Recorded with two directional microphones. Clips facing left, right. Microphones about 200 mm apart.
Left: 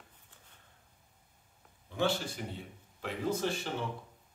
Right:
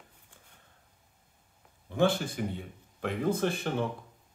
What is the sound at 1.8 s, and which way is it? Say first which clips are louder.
Speech: right 5 dB; 50° right (ahead or behind).